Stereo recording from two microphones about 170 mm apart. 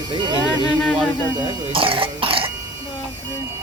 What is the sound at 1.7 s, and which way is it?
Speech, 30° right (ahead or behind).